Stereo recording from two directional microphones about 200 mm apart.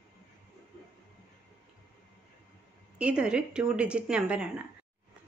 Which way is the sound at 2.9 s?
5° right (ahead or behind).